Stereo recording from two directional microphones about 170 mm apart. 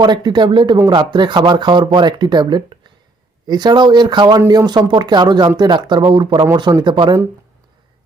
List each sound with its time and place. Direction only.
0.0 s speech: 25° right (ahead or behind)